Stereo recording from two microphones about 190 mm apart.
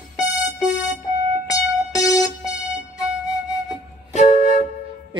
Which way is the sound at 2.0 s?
Centre (ahead or behind).